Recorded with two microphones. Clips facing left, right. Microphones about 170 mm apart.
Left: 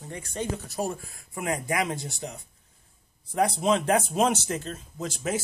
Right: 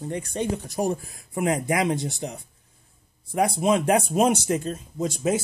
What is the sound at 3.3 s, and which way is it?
Speech, 10° right (ahead or behind).